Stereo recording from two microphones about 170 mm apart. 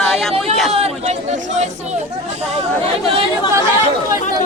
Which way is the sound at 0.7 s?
40° right (ahead or behind).